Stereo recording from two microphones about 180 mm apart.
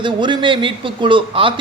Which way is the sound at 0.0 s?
25° right (ahead or behind).